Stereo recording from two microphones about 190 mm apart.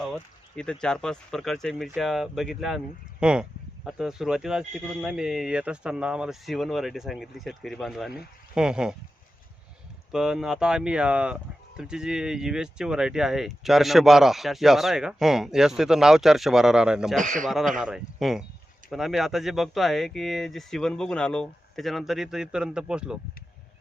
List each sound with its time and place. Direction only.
0.0 s speech: centre (ahead or behind)
10.1 s speech: 5° right (ahead or behind)
17.2 s a man's voice: 45° right (ahead or behind)
17.4 s speech: centre (ahead or behind)